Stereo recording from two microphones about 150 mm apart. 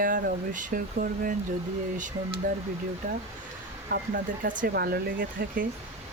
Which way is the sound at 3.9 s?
80° right.